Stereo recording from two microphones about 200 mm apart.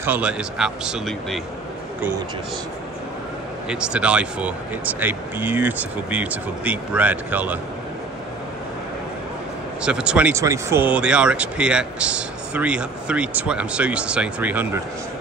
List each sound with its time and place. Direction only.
0.0 s speech: 5° right (ahead or behind)
3.6 s speech: 5° right (ahead or behind)
9.8 s speech: 5° right (ahead or behind)